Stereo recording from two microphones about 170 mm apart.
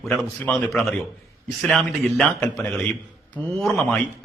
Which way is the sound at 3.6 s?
5° left (ahead or behind).